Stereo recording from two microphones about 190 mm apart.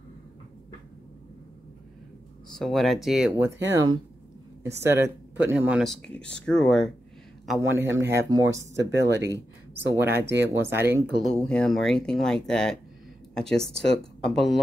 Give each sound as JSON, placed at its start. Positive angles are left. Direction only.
{"t": 2.5, "sound": "speech", "side_deg": 0}
{"t": 4.6, "sound": "speech", "side_deg": -15}
{"t": 7.6, "sound": "speech", "side_deg": -10}
{"t": 8.7, "sound": "speech", "side_deg": -65}
{"t": 9.9, "sound": "speech", "side_deg": -10}
{"t": 11.2, "sound": "speech", "side_deg": 5}